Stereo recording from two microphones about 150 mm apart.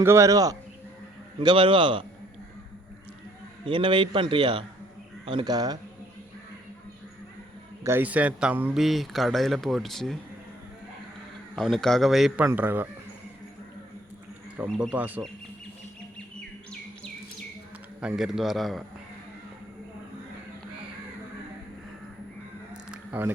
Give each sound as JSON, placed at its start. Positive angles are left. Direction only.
{"t": 0.0, "sound": "a man's voice", "side_deg": -20}
{"t": 3.7, "sound": "a man's voice", "side_deg": -35}
{"t": 7.9, "sound": "speech", "side_deg": -10}
{"t": 11.5, "sound": "speech", "side_deg": 0}
{"t": 12.5, "sound": "speech", "side_deg": -15}
{"t": 14.5, "sound": "speech", "side_deg": -10}
{"t": 18.0, "sound": "speech", "side_deg": -5}
{"t": 22.9, "sound": "a sound", "side_deg": -15}